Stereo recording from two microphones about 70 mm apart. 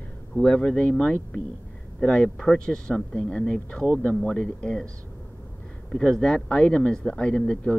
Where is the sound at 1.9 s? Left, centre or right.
Centre.